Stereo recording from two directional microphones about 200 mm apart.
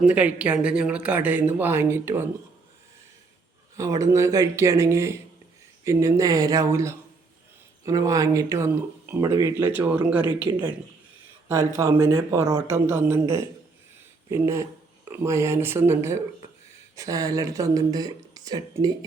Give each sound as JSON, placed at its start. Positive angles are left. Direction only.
{"t": 0.0, "sound": "speech", "side_deg": -5}
{"t": 3.8, "sound": "speech", "side_deg": -15}